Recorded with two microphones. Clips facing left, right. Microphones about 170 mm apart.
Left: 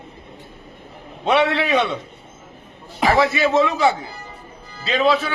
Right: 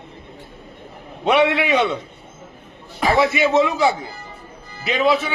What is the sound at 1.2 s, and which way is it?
Speech, 15° right (ahead or behind).